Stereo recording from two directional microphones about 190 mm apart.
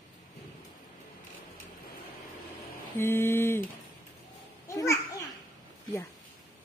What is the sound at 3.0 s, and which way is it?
Mantra, 10° left (ahead or behind).